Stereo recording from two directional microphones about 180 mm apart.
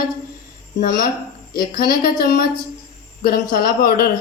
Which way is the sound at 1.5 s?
55° left (ahead or behind).